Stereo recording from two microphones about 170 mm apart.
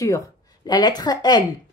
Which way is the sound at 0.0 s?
20° left (ahead or behind).